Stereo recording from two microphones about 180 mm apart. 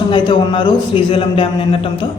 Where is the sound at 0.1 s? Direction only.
30° left (ahead or behind).